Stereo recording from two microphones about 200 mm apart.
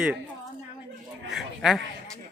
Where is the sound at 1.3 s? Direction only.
Centre (ahead or behind).